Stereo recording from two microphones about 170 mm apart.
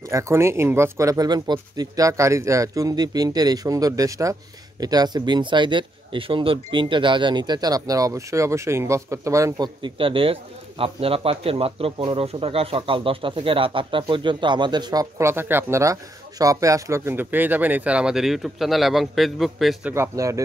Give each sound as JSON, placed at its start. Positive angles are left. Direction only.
{"t": 0.1, "sound": "speech", "side_deg": -15}
{"t": 19.9, "sound": "speech", "side_deg": -15}